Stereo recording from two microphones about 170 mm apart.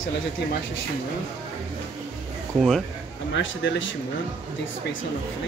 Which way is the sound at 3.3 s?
90° left.